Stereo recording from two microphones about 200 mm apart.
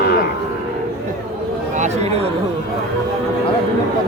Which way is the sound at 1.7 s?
35° right (ahead or behind).